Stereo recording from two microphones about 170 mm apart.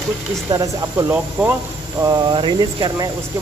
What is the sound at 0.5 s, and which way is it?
Speech, 20° right (ahead or behind).